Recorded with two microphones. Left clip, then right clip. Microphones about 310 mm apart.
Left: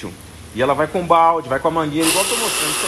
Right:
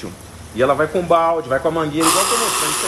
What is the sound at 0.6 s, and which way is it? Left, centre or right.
A man's voice, centre.